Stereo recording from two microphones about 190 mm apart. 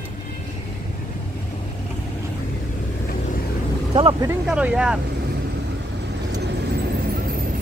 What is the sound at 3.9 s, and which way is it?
Vehicle, 25° right (ahead or behind).